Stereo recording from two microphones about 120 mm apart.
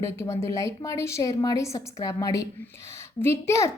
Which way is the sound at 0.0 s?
25° left (ahead or behind).